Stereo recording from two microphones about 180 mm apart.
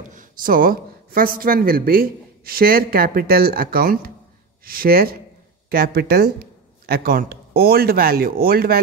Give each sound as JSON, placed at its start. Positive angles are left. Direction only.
{"t": 0.1, "sound": "speech", "side_deg": -50}